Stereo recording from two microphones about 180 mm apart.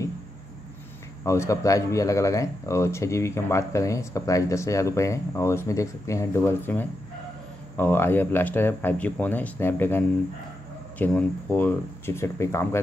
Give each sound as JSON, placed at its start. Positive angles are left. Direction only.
{"t": 1.2, "sound": "speech", "side_deg": 15}